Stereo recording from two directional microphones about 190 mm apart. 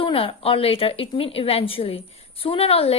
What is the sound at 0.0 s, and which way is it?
A woman's voice, 30° left (ahead or behind).